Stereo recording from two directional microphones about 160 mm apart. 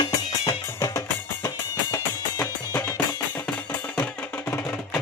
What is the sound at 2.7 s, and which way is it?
Music, 15° left (ahead or behind).